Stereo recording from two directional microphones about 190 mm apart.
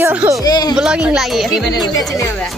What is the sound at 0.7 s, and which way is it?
A woman's voice, 5° right (ahead or behind).